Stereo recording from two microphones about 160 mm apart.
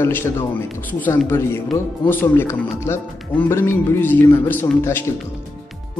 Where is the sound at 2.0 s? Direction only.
15° left (ahead or behind).